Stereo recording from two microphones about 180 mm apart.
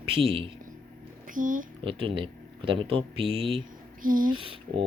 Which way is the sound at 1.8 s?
30° right (ahead or behind).